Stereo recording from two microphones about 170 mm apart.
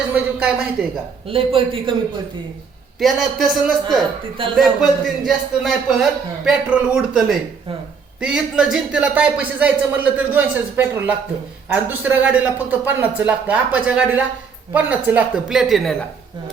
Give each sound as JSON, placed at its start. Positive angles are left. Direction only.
{"t": 0.1, "sound": "speech", "side_deg": -5}
{"t": 1.3, "sound": "a man's voice", "side_deg": -35}
{"t": 3.0, "sound": "a man's voice", "side_deg": 0}